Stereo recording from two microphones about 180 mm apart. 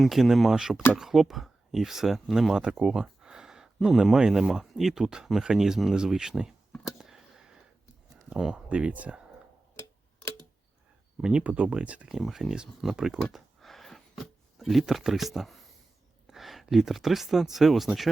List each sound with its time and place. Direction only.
0.0 s speech: centre (ahead or behind)
7.0 s a sound: centre (ahead or behind)
8.3 s speech: 5° right (ahead or behind)
11.2 s speech: 5° right (ahead or behind)